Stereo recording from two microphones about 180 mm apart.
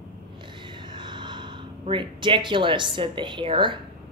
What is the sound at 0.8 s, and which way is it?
A woman's voice, 25° right (ahead or behind).